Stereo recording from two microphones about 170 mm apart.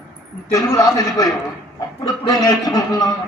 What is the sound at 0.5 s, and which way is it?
A man's voice, 20° left (ahead or behind).